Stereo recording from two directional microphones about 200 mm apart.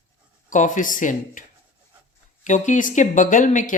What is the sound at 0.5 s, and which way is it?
Speech, 40° left (ahead or behind).